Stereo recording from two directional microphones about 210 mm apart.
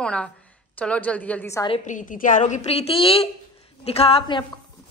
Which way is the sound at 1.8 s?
35° left (ahead or behind).